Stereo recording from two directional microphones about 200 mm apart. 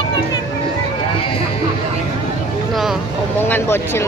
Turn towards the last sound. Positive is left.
turn(degrees=10)  # may be behind; listen again after turning